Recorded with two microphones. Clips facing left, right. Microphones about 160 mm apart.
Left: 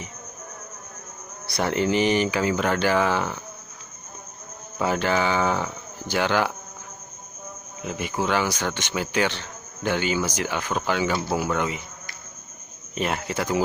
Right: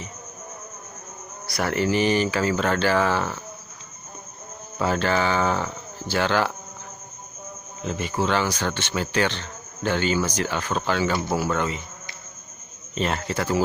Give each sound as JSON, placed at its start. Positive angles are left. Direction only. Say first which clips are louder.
{"t": 1.5, "sound": "speech", "louder": "even", "side_deg": 20}
{"t": 4.8, "sound": "speech", "louder": "even", "side_deg": 15}
{"t": 7.8, "sound": "speech", "louder": "right 2 dB", "side_deg": 10}
{"t": 12.9, "sound": "speech", "louder": "right 1 dB", "side_deg": 15}